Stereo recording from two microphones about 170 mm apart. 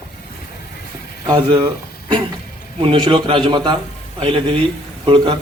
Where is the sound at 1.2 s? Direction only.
25° right (ahead or behind).